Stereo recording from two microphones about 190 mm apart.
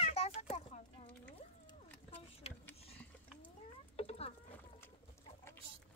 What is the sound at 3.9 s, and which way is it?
Patter, 30° left (ahead or behind).